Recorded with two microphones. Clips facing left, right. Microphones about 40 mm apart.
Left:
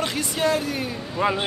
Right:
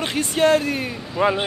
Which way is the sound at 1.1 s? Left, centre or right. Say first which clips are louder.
Right 3 dB; centre.